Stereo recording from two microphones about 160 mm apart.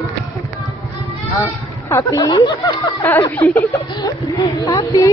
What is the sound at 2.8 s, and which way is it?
A woman's voice, 15° left (ahead or behind).